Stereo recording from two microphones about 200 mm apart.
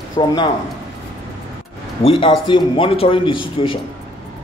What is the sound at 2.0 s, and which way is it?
Speech, 25° left (ahead or behind).